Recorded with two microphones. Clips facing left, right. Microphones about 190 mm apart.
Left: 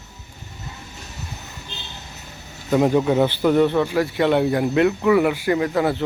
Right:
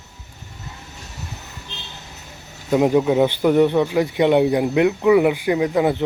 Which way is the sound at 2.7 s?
10° right (ahead or behind).